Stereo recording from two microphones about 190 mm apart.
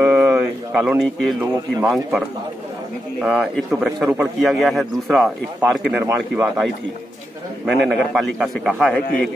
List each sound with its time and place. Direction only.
0.0 s a sound: 10° right (ahead or behind)
1.4 s a man's voice: 5° right (ahead or behind)
7.6 s a man's voice: 5° right (ahead or behind)